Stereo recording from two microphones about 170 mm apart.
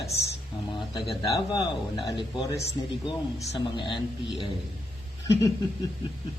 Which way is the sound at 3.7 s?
30° left (ahead or behind).